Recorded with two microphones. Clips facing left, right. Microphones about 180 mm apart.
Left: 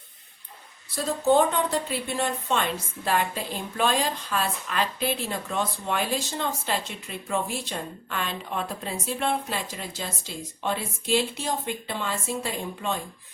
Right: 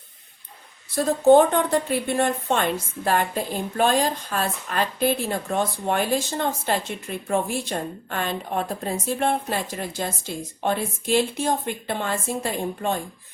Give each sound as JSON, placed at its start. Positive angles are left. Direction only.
{"t": 0.9, "sound": "a woman's voice", "side_deg": -50}